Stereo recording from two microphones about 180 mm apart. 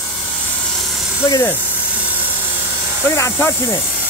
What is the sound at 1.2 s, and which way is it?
Speech, 20° left (ahead or behind).